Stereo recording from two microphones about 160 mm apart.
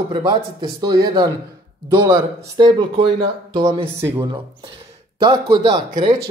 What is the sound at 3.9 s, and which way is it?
Speech, 15° right (ahead or behind).